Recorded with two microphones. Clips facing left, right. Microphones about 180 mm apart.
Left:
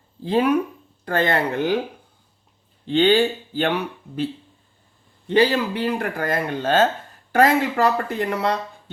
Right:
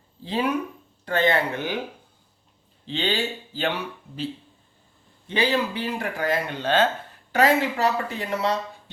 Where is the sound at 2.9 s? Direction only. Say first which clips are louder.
Left 10 dB; 55° left (ahead or behind).